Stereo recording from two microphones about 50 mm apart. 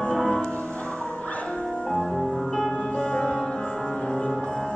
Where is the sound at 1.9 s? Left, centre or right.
Centre.